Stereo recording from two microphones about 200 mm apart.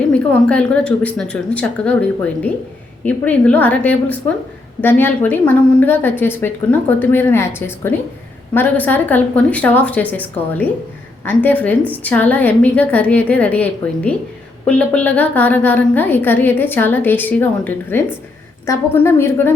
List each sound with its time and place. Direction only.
0.1 s a woman's voice: 5° left (ahead or behind)